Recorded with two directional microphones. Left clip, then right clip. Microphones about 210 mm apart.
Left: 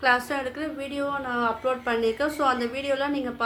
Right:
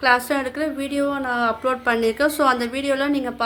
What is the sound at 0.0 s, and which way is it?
A woman's voice, 30° right (ahead or behind).